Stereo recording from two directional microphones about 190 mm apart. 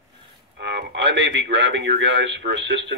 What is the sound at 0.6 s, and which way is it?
Speech, 65° right (ahead or behind).